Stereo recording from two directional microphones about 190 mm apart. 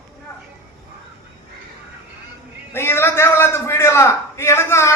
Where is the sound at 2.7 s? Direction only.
10° left (ahead or behind).